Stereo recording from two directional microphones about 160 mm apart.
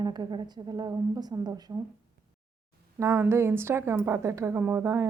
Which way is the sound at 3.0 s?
15° right (ahead or behind).